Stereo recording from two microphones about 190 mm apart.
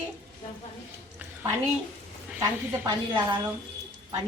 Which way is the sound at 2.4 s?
20° right (ahead or behind).